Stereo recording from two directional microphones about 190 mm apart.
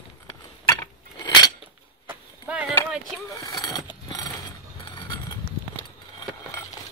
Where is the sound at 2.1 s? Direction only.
5° right (ahead or behind).